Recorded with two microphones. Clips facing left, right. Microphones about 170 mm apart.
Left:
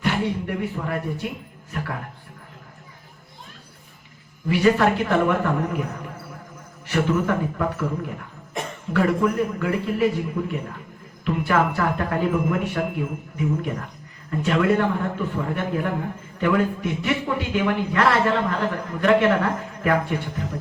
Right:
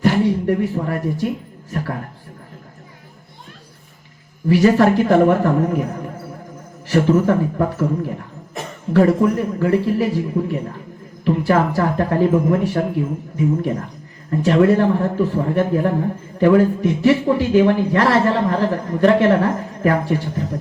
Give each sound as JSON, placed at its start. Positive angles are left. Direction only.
{"t": 0.0, "sound": "a man's voice", "side_deg": -40}
{"t": 4.4, "sound": "a man's voice", "side_deg": -35}